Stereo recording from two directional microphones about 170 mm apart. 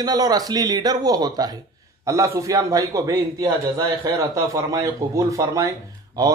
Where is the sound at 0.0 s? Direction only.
25° right (ahead or behind).